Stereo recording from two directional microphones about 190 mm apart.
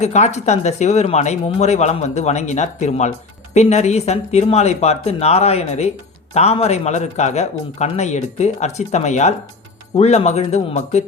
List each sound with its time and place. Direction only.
0.0 s speech: 35° left (ahead or behind)